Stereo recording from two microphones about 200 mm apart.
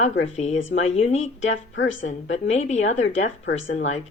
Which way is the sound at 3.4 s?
75° left (ahead or behind).